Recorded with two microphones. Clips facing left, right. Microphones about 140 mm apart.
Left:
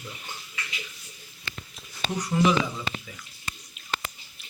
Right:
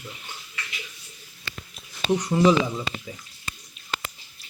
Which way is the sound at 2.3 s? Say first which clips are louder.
Right 4 dB; 30° right (ahead or behind).